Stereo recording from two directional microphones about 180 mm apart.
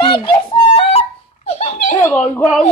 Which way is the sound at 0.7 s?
35° left (ahead or behind).